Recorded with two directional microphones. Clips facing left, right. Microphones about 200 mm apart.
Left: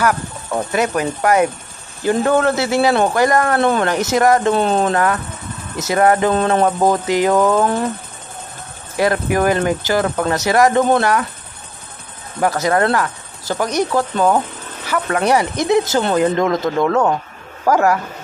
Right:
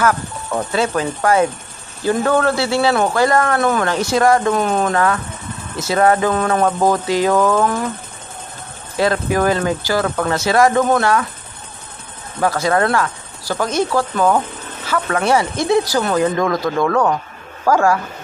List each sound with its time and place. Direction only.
0.0 s speech: 10° left (ahead or behind)
8.9 s speech: 15° left (ahead or behind)
12.4 s speech: 20° left (ahead or behind)